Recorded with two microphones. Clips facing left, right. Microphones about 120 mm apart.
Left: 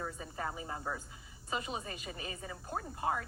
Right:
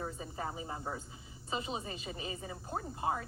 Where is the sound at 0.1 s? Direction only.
25° right (ahead or behind).